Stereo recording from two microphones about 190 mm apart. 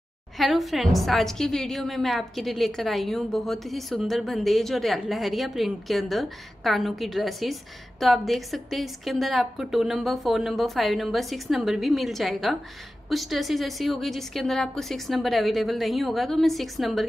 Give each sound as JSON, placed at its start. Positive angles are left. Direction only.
{"t": 0.4, "sound": "a woman's voice", "side_deg": 0}